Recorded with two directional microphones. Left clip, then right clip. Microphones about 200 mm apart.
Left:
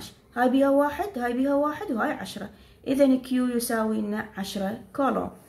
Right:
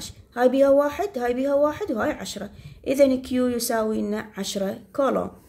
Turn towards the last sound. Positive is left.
turn(degrees=-40)  # may be behind; listen again after turning